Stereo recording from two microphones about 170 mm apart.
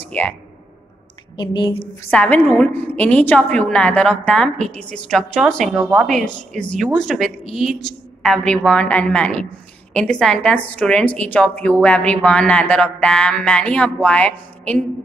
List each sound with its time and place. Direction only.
0.0 s speech: 10° left (ahead or behind)
1.3 s speech: 30° left (ahead or behind)
2.0 s a woman's voice: 10° left (ahead or behind)